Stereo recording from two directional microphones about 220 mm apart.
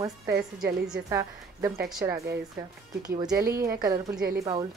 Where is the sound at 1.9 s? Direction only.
Centre (ahead or behind).